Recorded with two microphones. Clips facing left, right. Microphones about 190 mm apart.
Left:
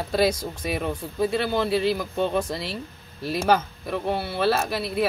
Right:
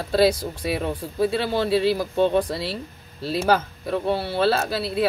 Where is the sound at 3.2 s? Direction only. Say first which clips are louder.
Right 1 dB; 30° right (ahead or behind).